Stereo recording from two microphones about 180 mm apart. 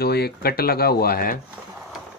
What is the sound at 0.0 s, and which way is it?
Speech, 60° left (ahead or behind).